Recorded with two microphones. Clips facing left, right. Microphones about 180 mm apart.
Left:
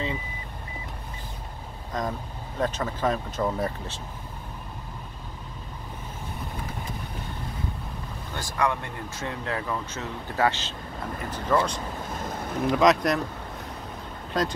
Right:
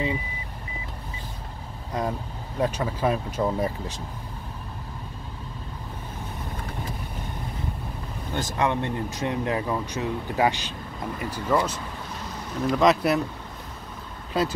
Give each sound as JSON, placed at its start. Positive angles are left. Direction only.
{"t": 1.9, "sound": "speech", "side_deg": -10}
{"t": 8.3, "sound": "speech", "side_deg": -20}
{"t": 12.2, "sound": "boat", "side_deg": 55}
{"t": 12.6, "sound": "speech", "side_deg": 0}
{"t": 14.3, "sound": "speech", "side_deg": -5}